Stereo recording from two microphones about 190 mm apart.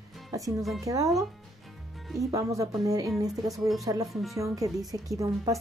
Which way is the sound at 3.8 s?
20° right (ahead or behind).